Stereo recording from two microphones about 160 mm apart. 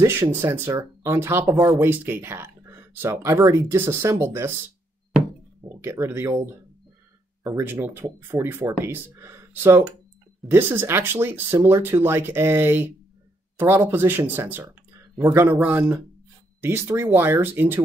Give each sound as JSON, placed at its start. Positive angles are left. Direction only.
{"t": 0.0, "sound": "speech", "side_deg": -15}
{"t": 5.6, "sound": "speech", "side_deg": -15}